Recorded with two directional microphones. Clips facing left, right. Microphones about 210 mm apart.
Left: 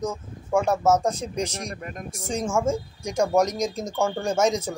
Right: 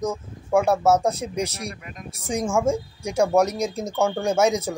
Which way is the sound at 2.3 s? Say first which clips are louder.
Right 2 dB; 10° right (ahead or behind).